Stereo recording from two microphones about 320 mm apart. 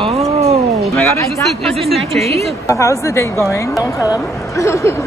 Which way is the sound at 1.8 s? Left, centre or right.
Centre.